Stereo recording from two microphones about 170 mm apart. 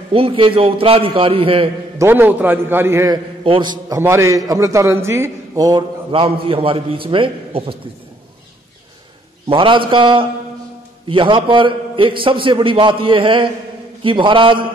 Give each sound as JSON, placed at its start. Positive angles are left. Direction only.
{"t": 0.1, "sound": "a man's voice", "side_deg": -30}
{"t": 2.0, "sound": "a man's voice", "side_deg": -10}
{"t": 3.4, "sound": "a man's voice", "side_deg": -30}
{"t": 6.1, "sound": "a man's voice", "side_deg": -30}
{"t": 9.5, "sound": "a man's voice", "side_deg": -30}